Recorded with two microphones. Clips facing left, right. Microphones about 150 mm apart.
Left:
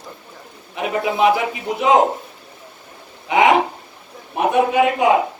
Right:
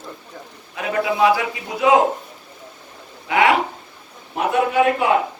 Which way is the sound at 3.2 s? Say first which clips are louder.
Left 2 dB; 20° left (ahead or behind).